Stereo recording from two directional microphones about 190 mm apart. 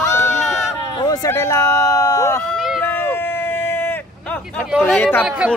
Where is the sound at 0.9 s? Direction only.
20° left (ahead or behind).